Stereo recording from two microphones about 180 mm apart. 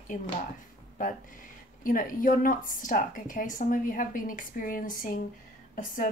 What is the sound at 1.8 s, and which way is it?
Speech, 50° left (ahead or behind).